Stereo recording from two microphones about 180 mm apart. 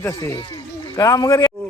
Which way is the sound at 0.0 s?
15° left (ahead or behind).